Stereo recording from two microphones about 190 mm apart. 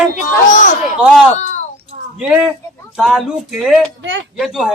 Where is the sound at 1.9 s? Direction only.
40° right (ahead or behind).